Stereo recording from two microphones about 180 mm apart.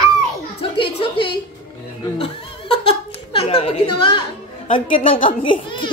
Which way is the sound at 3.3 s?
30° left (ahead or behind).